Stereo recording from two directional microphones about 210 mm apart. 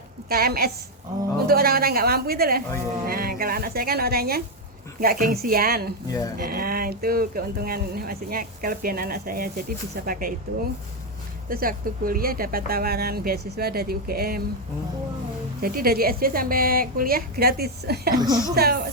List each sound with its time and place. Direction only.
0.3 s speech: 45° right (ahead or behind)
11.4 s speech: 45° right (ahead or behind)
15.6 s speech: 45° right (ahead or behind)
18.2 s speech: 20° right (ahead or behind)
18.5 s speech: 50° right (ahead or behind)